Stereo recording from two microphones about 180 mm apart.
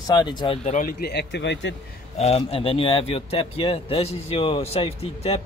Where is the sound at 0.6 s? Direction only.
40° left (ahead or behind).